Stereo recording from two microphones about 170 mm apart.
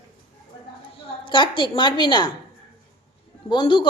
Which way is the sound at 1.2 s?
30° left (ahead or behind).